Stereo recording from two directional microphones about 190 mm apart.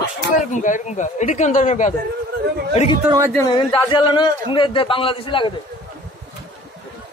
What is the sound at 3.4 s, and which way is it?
A man's voice, 25° left (ahead or behind).